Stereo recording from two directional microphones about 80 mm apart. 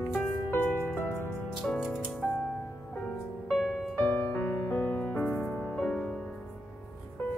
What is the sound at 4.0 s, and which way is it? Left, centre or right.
Music, centre.